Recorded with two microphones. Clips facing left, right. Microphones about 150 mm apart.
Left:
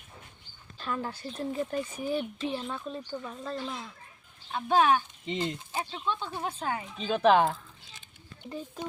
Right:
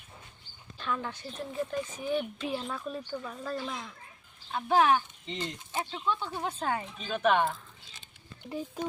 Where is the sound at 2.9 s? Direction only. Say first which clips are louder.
Even; 25° left (ahead or behind).